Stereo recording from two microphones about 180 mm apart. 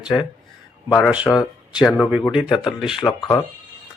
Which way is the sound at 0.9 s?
Centre (ahead or behind).